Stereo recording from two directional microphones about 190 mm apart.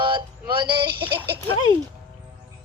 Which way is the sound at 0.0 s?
25° right (ahead or behind).